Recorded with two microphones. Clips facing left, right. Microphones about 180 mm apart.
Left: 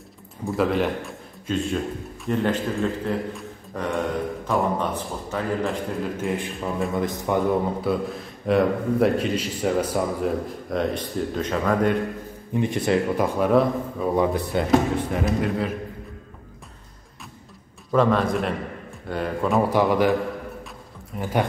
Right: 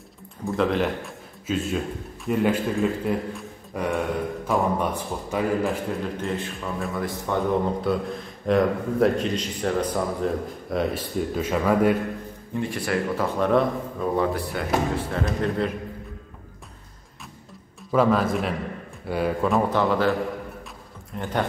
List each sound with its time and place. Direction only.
0.5 s a man's voice: centre (ahead or behind)
4.7 s a man's voice: 10° right (ahead or behind)
5.6 s a man's voice: centre (ahead or behind)
6.2 s speech: 15° left (ahead or behind)
7.8 s a man's voice: centre (ahead or behind)
12.5 s speech: 20° left (ahead or behind)
14.2 s speech: 20° left (ahead or behind)
15.2 s a man's voice: 5° left (ahead or behind)
17.9 s a man's voice: 5° right (ahead or behind)
19.7 s speech: 15° left (ahead or behind)
21.2 s speech: 10° left (ahead or behind)